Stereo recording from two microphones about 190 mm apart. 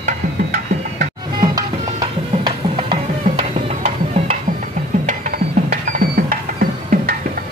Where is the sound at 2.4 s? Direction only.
30° right (ahead or behind).